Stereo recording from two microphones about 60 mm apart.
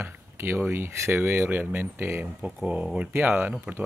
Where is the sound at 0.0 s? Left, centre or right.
Right.